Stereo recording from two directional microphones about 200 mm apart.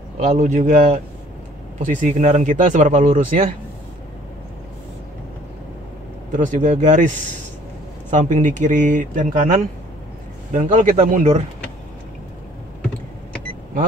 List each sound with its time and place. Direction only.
0.2 s speech: 35° right (ahead or behind)
6.3 s speech: 40° right (ahead or behind)
8.1 s speech: 40° right (ahead or behind)